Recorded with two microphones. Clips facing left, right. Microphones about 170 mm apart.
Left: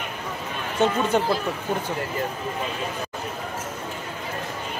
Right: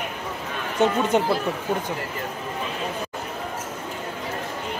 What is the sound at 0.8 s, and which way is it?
Speech, 15° right (ahead or behind).